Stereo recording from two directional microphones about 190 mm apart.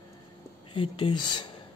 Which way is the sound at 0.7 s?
25° left (ahead or behind).